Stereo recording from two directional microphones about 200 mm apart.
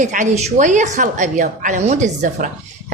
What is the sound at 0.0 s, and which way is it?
Speech, 40° right (ahead or behind).